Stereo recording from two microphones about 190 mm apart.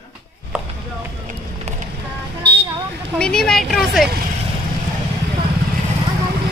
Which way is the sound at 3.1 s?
5° left (ahead or behind).